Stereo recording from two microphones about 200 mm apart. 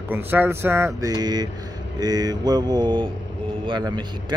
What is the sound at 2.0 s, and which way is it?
Mantra, 20° right (ahead or behind).